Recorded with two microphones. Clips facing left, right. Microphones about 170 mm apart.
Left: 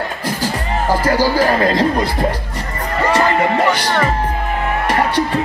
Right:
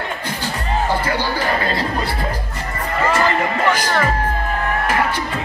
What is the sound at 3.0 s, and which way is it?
Music, 35° left (ahead or behind).